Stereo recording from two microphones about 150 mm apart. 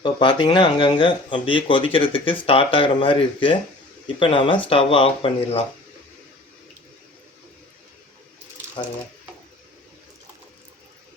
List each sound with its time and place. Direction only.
0.0 s speech: 30° left (ahead or behind)